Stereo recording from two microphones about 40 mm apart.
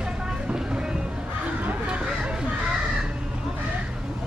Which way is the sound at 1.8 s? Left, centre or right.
Right.